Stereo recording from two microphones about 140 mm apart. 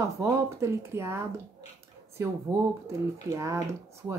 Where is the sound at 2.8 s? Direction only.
20° right (ahead or behind).